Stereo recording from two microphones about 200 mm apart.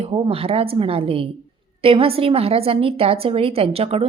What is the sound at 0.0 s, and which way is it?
A woman's voice, 30° right (ahead or behind).